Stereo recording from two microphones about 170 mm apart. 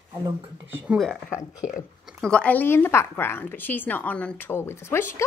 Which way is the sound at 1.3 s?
20° left (ahead or behind).